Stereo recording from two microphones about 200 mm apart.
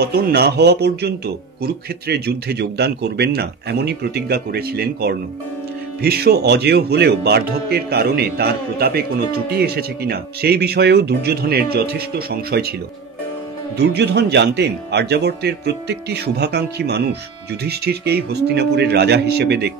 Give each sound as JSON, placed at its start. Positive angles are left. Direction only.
{"t": 0.0, "sound": "speech", "side_deg": -55}
{"t": 13.7, "sound": "speech", "side_deg": -55}